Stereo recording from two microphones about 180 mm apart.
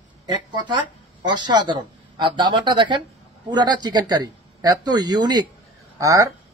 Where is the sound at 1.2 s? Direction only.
25° right (ahead or behind).